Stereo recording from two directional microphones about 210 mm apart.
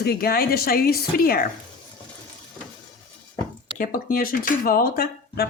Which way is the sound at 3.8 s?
40° left (ahead or behind).